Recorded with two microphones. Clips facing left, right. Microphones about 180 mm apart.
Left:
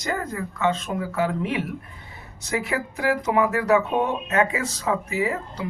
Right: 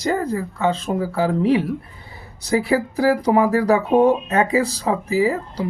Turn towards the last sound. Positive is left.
turn(degrees=-35)  # may be behind; listen again after turning